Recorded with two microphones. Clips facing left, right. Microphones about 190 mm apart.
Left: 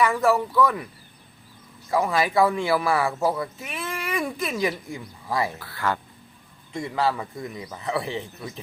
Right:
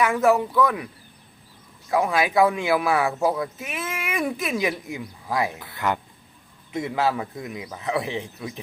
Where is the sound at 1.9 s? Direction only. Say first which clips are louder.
Right 1 dB; centre (ahead or behind).